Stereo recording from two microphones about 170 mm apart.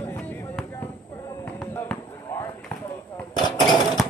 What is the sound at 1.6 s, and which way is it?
Basketball bounce, 10° left (ahead or behind).